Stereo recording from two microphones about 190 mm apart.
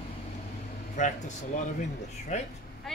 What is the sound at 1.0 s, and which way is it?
Speech, 40° left (ahead or behind).